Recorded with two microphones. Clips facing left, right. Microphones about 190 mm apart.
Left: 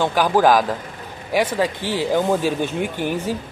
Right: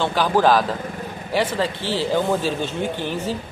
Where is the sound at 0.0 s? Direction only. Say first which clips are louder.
Left 2 dB; 10° left (ahead or behind).